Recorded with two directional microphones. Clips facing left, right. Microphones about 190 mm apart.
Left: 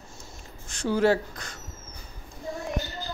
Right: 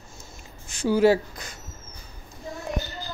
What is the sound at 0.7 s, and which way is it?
Speech, 5° right (ahead or behind).